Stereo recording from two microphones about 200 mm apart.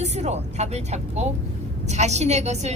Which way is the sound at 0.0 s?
35° right (ahead or behind).